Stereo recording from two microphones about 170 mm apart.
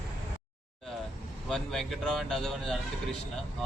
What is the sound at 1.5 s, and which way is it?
Speech, 5° left (ahead or behind).